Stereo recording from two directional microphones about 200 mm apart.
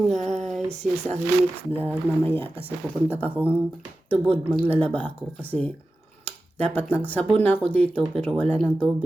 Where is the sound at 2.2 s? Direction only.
10° left (ahead or behind).